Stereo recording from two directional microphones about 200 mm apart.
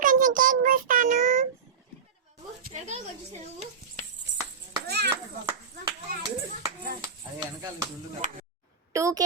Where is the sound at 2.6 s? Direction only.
35° right (ahead or behind).